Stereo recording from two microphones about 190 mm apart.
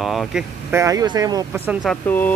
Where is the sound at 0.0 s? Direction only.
Centre (ahead or behind).